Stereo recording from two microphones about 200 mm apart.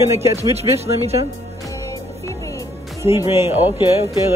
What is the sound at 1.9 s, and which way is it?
Music, 15° left (ahead or behind).